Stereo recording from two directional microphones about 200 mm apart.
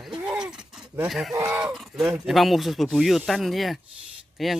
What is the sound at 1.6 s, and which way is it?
Speech, centre (ahead or behind).